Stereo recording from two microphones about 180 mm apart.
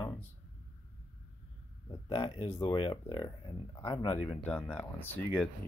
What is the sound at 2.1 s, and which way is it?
Speech, 35° left (ahead or behind).